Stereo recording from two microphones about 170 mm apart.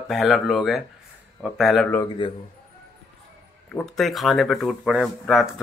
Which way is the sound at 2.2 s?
30° left (ahead or behind).